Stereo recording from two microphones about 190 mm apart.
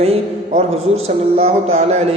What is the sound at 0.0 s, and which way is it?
A man's voice, 35° right (ahead or behind).